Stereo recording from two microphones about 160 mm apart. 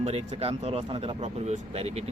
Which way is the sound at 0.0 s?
40° right (ahead or behind).